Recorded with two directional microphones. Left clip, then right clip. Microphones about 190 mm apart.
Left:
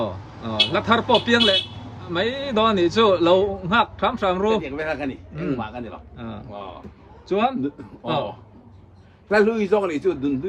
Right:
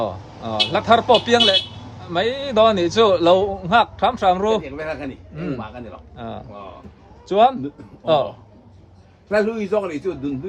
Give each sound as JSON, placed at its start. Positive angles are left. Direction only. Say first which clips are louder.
{"t": 0.4, "sound": "a sound", "louder": "even", "side_deg": -35}
{"t": 0.7, "sound": "a man's voice", "louder": "right 6 dB", "side_deg": -5}
{"t": 9.3, "sound": "speech", "louder": "left 1 dB", "side_deg": 0}